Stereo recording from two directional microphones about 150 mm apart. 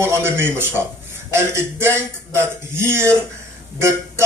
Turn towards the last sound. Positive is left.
turn(degrees=-15)  # may be behind; listen again after turning